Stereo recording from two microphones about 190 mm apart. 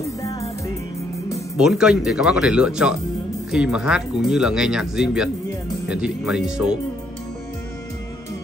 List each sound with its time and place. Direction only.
1.6 s speech: 5° right (ahead or behind)